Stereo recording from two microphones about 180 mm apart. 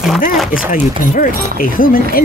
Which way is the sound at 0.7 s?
50° left (ahead or behind).